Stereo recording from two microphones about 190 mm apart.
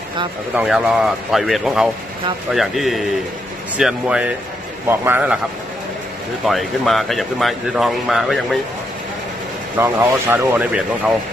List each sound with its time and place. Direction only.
0.6 s speech: 5° right (ahead or behind)
6.4 s speech: centre (ahead or behind)
9.8 s speech: 15° right (ahead or behind)